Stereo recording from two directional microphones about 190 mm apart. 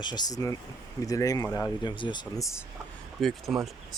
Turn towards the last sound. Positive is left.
turn(degrees=0)  # may be behind; listen again after turning